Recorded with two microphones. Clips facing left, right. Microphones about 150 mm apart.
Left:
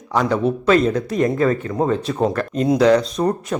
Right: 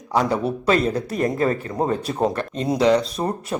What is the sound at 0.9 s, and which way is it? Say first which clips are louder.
Speech: left 4 dB; 35° right (ahead or behind).